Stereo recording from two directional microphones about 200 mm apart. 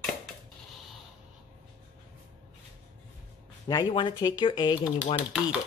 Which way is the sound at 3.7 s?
20° left (ahead or behind).